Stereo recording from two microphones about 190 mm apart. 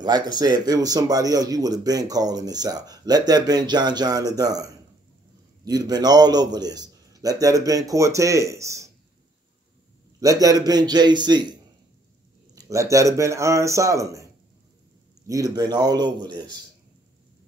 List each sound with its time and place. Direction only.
0.0 s speech: 20° right (ahead or behind)
10.2 s speech: 20° right (ahead or behind)
12.5 s a man's voice: 15° right (ahead or behind)